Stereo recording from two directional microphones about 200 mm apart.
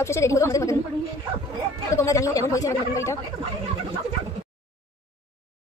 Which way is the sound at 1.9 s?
15° left (ahead or behind).